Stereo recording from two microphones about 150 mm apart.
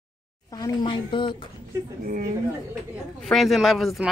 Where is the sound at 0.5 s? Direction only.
25° left (ahead or behind).